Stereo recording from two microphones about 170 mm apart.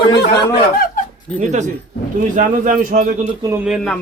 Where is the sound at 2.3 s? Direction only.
50° right (ahead or behind).